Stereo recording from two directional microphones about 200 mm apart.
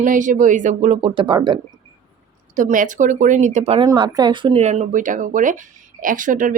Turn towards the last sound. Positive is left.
turn(degrees=-40)  # may be behind; listen again after turning